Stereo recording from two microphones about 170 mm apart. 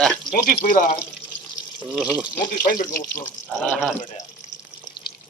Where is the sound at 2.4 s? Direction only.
60° left (ahead or behind).